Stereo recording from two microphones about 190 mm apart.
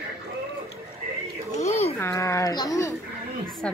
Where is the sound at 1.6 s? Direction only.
35° left (ahead or behind).